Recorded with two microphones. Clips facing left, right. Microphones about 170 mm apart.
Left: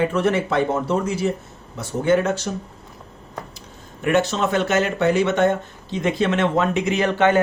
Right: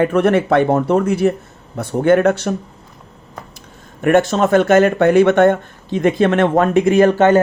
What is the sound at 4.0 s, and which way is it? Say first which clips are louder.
Speech: right 6 dB; 55° right (ahead or behind).